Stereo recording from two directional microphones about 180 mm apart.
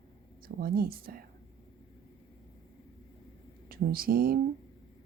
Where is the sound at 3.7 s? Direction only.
55° right (ahead or behind).